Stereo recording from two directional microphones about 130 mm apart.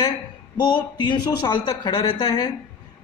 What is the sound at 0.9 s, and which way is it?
Speech, 35° left (ahead or behind).